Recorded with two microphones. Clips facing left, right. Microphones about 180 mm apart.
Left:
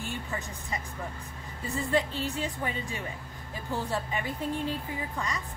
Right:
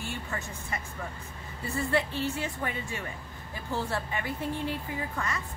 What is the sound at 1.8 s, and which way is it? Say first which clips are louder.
Speech: even; 15° left (ahead or behind).